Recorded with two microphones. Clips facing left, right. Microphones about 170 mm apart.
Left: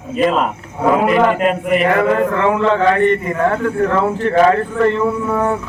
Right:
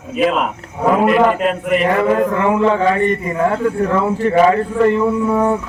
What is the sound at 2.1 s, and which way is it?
A man's voice, 10° right (ahead or behind).